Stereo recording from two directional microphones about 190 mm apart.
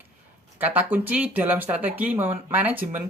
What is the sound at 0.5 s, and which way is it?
Speech, 10° right (ahead or behind).